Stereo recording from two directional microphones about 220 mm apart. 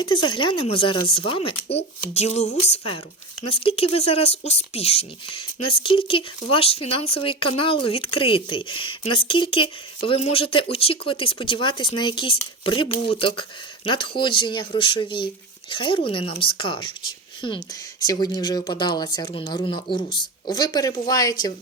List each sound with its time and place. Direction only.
0.0 s speech: 20° left (ahead or behind)